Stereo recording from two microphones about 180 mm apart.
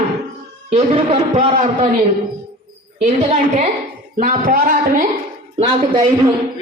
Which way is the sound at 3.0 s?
40° right (ahead or behind).